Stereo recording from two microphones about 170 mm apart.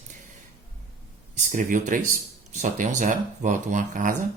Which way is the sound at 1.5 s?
50° right (ahead or behind).